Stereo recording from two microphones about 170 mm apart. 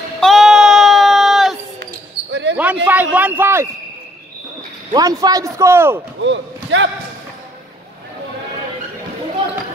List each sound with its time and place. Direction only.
0.2 s a sound: centre (ahead or behind)
2.5 s a man's voice: 10° right (ahead or behind)
4.9 s a man's voice: 20° right (ahead or behind)
6.2 s speech: 90° right